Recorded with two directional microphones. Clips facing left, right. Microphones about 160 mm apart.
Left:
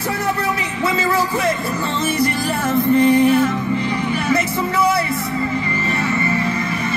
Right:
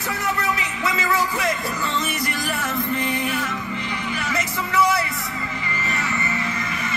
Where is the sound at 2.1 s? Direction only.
30° left (ahead or behind).